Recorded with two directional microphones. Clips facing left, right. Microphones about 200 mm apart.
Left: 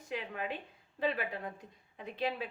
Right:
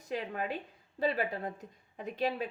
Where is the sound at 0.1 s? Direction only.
40° right (ahead or behind).